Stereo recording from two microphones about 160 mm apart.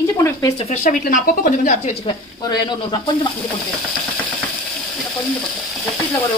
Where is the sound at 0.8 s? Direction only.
50° left (ahead or behind).